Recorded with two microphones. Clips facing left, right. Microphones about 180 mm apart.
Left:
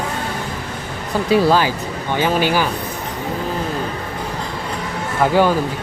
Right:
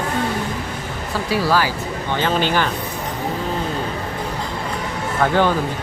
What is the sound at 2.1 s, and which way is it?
Speech, 10° left (ahead or behind).